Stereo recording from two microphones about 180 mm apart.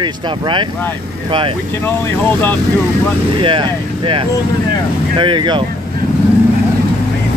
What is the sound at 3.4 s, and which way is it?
Speech, 30° right (ahead or behind).